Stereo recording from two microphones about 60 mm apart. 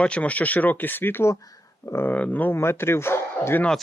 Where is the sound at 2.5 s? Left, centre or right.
Left.